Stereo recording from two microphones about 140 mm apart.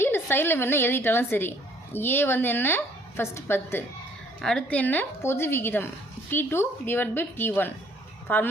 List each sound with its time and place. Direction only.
0.0 s a woman's voice: 15° left (ahead or behind)
4.4 s a woman's voice: 5° left (ahead or behind)